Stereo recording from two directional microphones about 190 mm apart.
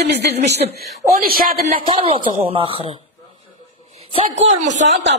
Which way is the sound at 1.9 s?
30° right (ahead or behind).